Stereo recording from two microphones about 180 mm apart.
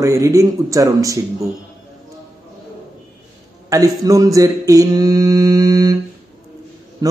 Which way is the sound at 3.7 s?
20° right (ahead or behind).